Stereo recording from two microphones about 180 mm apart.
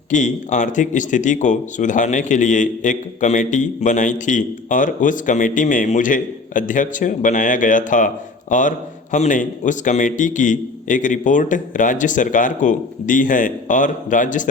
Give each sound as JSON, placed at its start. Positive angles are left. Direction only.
{"t": 0.1, "sound": "speech", "side_deg": 45}